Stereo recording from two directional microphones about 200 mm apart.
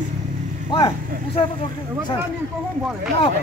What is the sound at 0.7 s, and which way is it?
Speech, 20° left (ahead or behind).